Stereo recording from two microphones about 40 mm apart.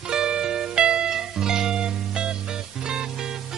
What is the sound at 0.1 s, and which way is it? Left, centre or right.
Music, centre.